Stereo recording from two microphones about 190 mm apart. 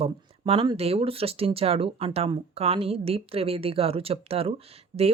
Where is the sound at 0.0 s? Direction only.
30° right (ahead or behind).